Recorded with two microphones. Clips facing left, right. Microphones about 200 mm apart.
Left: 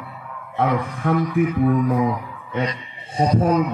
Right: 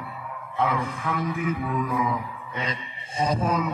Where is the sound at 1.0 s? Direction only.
55° left (ahead or behind).